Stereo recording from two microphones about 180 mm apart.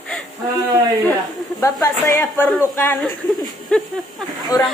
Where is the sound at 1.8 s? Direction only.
15° left (ahead or behind).